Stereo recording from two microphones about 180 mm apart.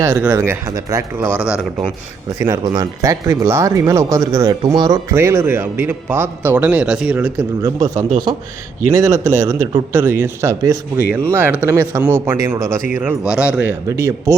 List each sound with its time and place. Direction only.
0.0 s speech: 15° right (ahead or behind)
1.5 s speech: 5° right (ahead or behind)
2.4 s speech: 20° right (ahead or behind)